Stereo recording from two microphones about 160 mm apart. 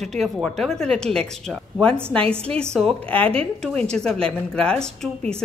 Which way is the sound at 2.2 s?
35° right (ahead or behind).